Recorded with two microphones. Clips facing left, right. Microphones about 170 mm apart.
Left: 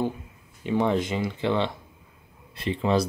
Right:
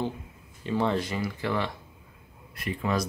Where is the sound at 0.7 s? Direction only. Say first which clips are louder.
Left 3 dB; 15° left (ahead or behind).